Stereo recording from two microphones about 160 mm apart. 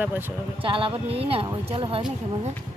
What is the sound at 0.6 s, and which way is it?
Speech, 35° right (ahead or behind).